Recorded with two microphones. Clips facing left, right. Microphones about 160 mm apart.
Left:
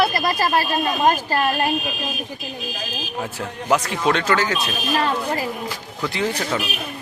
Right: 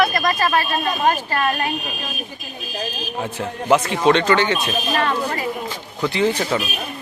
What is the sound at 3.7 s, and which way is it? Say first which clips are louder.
Speech: right 4 dB; centre (ahead or behind).